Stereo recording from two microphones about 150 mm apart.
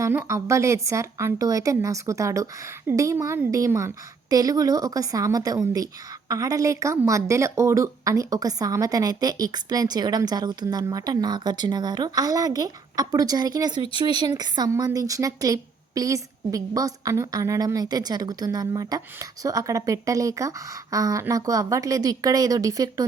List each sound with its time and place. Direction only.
0.0 s a woman's voice: 15° right (ahead or behind)